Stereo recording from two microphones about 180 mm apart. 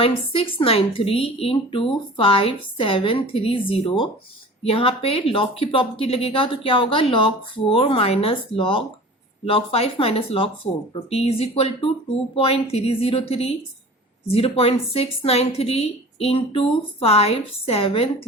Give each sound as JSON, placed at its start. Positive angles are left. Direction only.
{"t": 0.0, "sound": "speech", "side_deg": 30}